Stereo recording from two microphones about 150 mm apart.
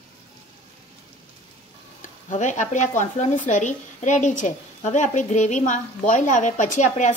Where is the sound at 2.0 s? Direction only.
55° left (ahead or behind).